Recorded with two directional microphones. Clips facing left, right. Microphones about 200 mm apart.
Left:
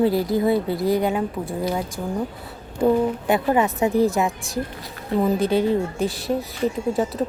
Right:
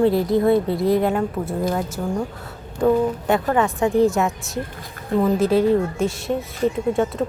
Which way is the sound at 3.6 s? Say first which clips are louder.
Right 1 dB; 20° left (ahead or behind).